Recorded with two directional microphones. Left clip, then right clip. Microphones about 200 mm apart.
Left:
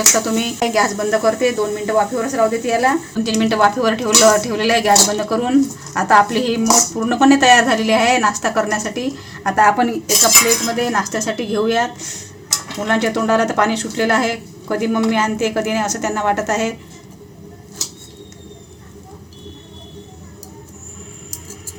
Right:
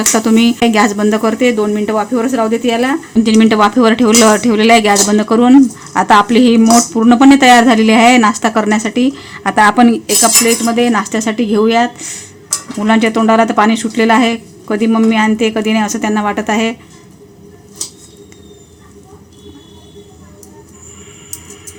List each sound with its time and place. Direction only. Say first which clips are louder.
0.3 s speech: right 8 dB; 55° right (ahead or behind)